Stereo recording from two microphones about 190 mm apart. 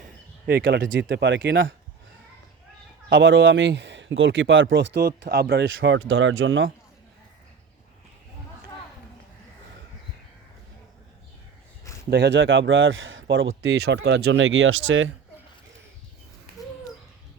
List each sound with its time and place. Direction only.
0.4 s speech: 55° right (ahead or behind)
3.1 s speech: 75° right (ahead or behind)
4.9 s speech: 55° right (ahead or behind); by 6.7 s 90° right
12.1 s speech: 70° right (ahead or behind); by 15.1 s 85° right